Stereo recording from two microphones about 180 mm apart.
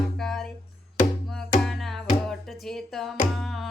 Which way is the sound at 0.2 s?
Centre (ahead or behind).